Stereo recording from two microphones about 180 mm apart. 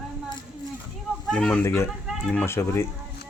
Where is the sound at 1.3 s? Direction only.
5° left (ahead or behind).